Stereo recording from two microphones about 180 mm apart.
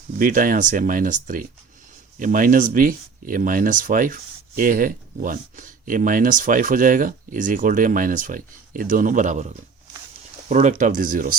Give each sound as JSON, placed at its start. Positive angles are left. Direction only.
{"t": 0.2, "sound": "speech", "side_deg": -50}